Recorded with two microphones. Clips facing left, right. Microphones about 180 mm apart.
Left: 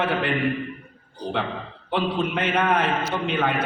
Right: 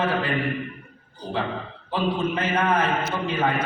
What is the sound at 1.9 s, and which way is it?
A man's voice, 70° left (ahead or behind).